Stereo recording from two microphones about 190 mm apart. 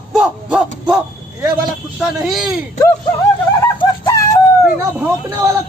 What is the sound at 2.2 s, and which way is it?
Speech, centre (ahead or behind).